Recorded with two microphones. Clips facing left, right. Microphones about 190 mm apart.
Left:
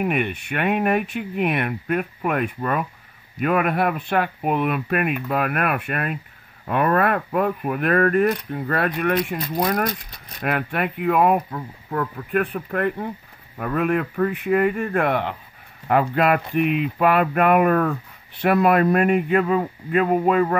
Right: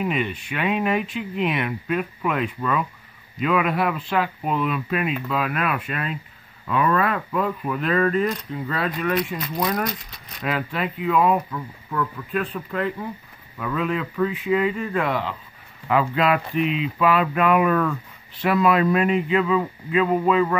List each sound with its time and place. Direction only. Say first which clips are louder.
0.0 s speech: left 2 dB; 55° left (ahead or behind)
11.5 s speech: left 1 dB; 40° left (ahead or behind)
12.3 s speech: left 4 dB; 60° left (ahead or behind)